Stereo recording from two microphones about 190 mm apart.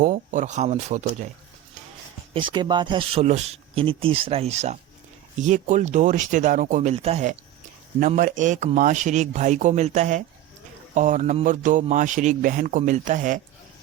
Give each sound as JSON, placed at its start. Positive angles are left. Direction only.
{"t": 0.0, "sound": "a man's voice", "side_deg": -45}
{"t": 2.3, "sound": "a man's voice", "side_deg": -25}